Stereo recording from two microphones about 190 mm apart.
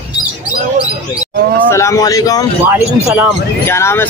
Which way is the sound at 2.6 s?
10° right (ahead or behind).